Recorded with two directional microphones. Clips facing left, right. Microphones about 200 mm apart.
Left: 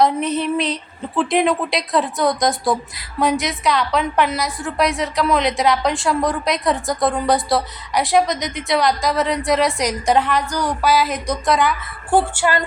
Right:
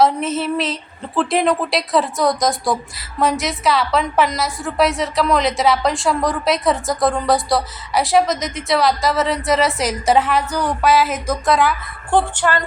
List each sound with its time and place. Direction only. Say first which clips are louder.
0.0 s speech: right 1 dB; centre (ahead or behind)